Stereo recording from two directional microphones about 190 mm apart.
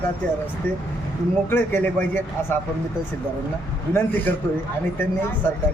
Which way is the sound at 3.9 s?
15° left (ahead or behind).